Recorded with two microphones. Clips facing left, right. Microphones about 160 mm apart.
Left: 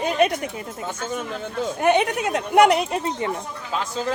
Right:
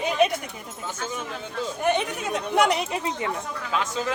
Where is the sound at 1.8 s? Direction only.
70° left (ahead or behind); by 3.1 s 50° left (ahead or behind).